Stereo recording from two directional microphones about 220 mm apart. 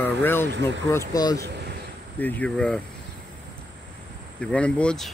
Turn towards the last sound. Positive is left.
turn(degrees=5)  # may be behind; listen again after turning